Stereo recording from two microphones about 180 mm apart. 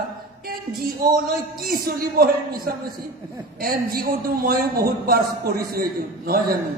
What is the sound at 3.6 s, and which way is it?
A man's voice, 55° right (ahead or behind).